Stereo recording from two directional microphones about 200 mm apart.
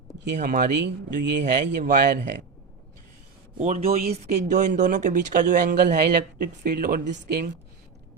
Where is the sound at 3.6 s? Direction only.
35° right (ahead or behind).